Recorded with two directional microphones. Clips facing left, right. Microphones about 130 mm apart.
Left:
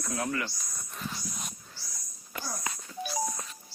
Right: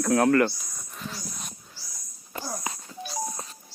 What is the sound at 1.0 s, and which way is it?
Dog, centre (ahead or behind).